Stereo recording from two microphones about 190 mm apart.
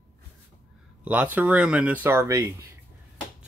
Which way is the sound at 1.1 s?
10° right (ahead or behind).